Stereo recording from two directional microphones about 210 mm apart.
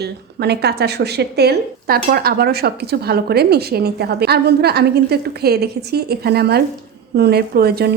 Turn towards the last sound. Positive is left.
turn(degrees=-50)  # may be behind; listen again after turning